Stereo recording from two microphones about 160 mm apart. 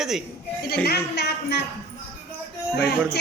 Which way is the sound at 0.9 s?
90° left.